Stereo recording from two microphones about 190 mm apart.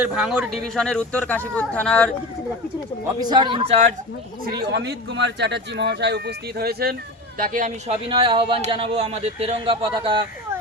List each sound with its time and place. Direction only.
0.0 s speech: 5° right (ahead or behind)
3.2 s a man's voice: 20° right (ahead or behind)
4.6 s speech: 60° right (ahead or behind); by 10.2 s 25° right (ahead or behind)